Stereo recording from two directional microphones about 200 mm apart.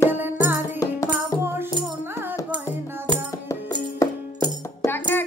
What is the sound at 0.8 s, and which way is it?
Music, 15° left (ahead or behind).